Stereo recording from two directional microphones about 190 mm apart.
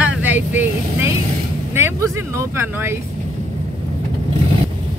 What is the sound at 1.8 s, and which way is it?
Speech, 15° right (ahead or behind).